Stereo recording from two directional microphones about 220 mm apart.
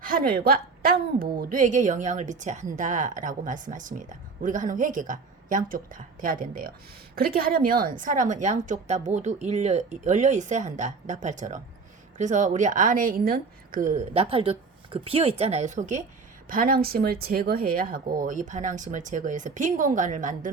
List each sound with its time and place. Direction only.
0.0 s a woman's voice: 40° right (ahead or behind)